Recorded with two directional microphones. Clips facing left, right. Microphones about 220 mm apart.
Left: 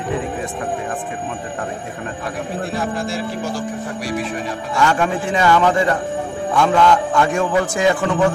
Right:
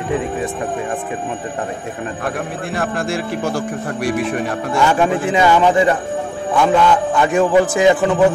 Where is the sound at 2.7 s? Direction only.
60° right (ahead or behind).